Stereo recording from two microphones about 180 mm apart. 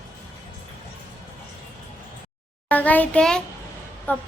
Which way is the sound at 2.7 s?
10° left (ahead or behind).